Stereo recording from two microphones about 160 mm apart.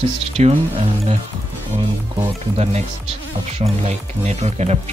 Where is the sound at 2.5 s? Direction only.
40° right (ahead or behind).